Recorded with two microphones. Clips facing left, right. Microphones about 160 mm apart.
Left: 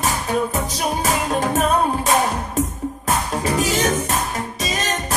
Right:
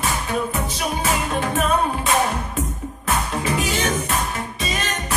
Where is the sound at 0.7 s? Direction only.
40° left (ahead or behind).